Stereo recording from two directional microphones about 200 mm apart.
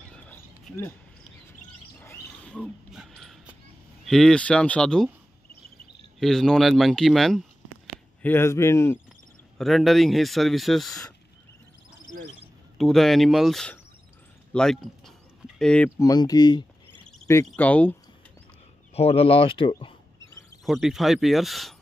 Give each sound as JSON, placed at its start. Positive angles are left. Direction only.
{"t": 0.3, "sound": "a sound", "side_deg": 10}
{"t": 2.0, "sound": "a sound", "side_deg": 5}
{"t": 4.0, "sound": "speech", "side_deg": 0}
{"t": 6.1, "sound": "speech", "side_deg": 0}
{"t": 8.2, "sound": "speech", "side_deg": 10}
{"t": 9.6, "sound": "speech", "side_deg": 0}
{"t": 12.7, "sound": "speech", "side_deg": 0}
{"t": 16.0, "sound": "speech", "side_deg": 20}
{"t": 17.5, "sound": "speech", "side_deg": 5}
{"t": 18.9, "sound": "speech", "side_deg": 30}
{"t": 20.6, "sound": "speech", "side_deg": 0}